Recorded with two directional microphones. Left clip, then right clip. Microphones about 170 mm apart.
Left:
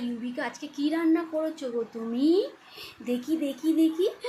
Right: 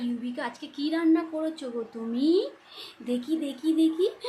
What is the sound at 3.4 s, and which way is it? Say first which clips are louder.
Speech: even; 10° left (ahead or behind).